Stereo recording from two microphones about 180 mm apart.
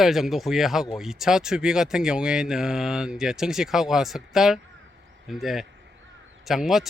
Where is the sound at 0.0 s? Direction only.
Centre (ahead or behind).